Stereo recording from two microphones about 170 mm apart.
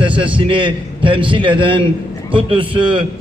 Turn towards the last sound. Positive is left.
turn(degrees=-30)  # may be behind; listen again after turning